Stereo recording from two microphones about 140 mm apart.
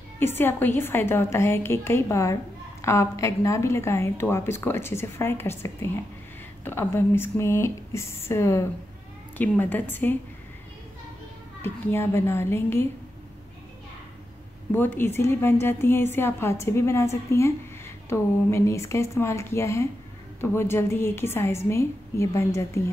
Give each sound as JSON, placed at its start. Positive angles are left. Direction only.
{"t": 0.2, "sound": "a woman's voice", "side_deg": 15}
{"t": 11.6, "sound": "a woman's voice", "side_deg": 15}
{"t": 14.7, "sound": "a woman's voice", "side_deg": 15}